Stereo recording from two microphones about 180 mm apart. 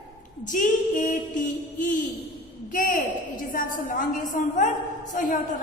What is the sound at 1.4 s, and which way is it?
A woman's voice, 45° left (ahead or behind).